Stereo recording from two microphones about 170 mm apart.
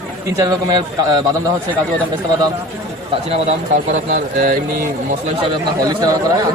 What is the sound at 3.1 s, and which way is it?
A man's voice, 40° right (ahead or behind).